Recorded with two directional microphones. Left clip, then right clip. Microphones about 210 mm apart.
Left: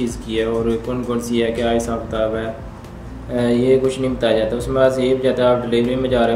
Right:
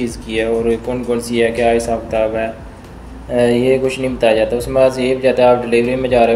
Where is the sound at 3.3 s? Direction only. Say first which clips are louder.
Right 3 dB; 15° left (ahead or behind).